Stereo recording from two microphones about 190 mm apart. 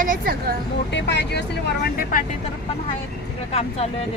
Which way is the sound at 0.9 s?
65° left (ahead or behind).